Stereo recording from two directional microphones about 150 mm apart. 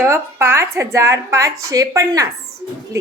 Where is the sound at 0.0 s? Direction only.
15° right (ahead or behind).